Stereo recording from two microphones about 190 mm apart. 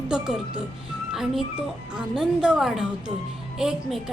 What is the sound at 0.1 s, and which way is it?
A woman's voice, 5° right (ahead or behind).